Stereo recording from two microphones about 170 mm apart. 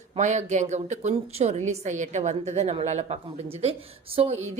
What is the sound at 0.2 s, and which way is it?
A woman's voice, 45° right (ahead or behind).